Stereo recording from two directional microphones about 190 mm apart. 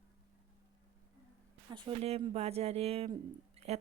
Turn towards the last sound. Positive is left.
turn(degrees=-35)  # may be behind; listen again after turning